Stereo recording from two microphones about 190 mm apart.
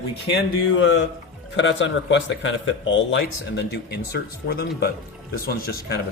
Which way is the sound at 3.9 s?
55° left (ahead or behind).